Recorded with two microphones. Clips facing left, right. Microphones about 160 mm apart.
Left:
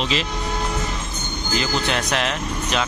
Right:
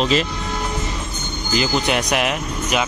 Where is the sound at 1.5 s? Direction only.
15° right (ahead or behind).